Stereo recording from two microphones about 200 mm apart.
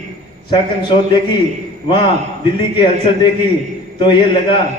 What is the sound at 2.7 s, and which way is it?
A man's voice, 25° left (ahead or behind).